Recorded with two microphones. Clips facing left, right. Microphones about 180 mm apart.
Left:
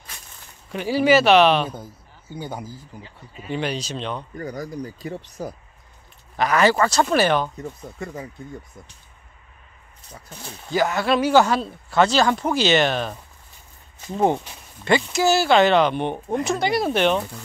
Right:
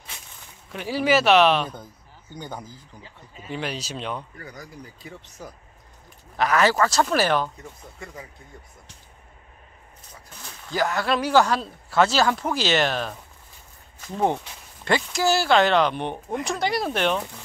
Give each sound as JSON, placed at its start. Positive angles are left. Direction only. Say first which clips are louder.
{"t": 0.7, "sound": "speech", "louder": "left 4 dB", "side_deg": 0}
{"t": 3.4, "sound": "speech", "louder": "left 4 dB", "side_deg": 0}
{"t": 4.4, "sound": "speech", "louder": "left 11 dB", "side_deg": 40}
{"t": 6.3, "sound": "speech", "louder": "left 2 dB", "side_deg": 0}
{"t": 8.0, "sound": "speech", "louder": "left 8 dB", "side_deg": 40}
{"t": 10.7, "sound": "speech", "louder": "left 3 dB", "side_deg": 0}
{"t": 14.9, "sound": "speech", "louder": "left 3 dB", "side_deg": 0}